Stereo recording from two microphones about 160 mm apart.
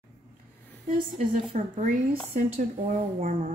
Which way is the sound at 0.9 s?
55° right (ahead or behind).